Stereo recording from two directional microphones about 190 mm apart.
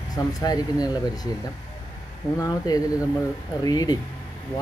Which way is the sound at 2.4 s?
20° left (ahead or behind).